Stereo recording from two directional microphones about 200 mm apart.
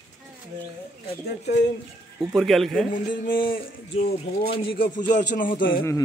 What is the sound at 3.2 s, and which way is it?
Speech, 45° left (ahead or behind).